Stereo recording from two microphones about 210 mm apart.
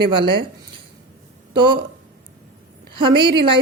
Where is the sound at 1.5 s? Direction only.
20° right (ahead or behind).